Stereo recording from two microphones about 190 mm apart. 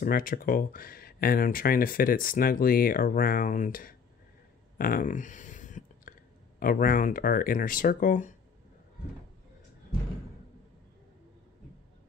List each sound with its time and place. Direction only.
0.0 s speech: 45° left (ahead or behind)
4.7 s a sound: 50° left (ahead or behind)
6.6 s speech: 50° left (ahead or behind)